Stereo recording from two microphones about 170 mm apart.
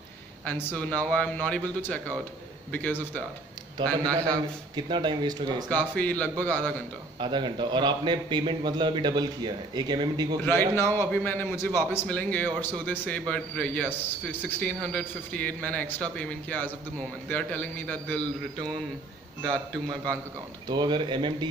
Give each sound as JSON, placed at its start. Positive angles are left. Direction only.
{"t": 0.5, "sound": "a man's voice", "side_deg": 10}
{"t": 4.1, "sound": "a man's voice", "side_deg": -25}
{"t": 5.7, "sound": "a man's voice", "side_deg": 10}
{"t": 7.2, "sound": "a man's voice", "side_deg": -25}
{"t": 10.4, "sound": "a man's voice", "side_deg": 15}
{"t": 19.4, "sound": "a man's voice", "side_deg": 5}
{"t": 20.6, "sound": "a man's voice", "side_deg": -25}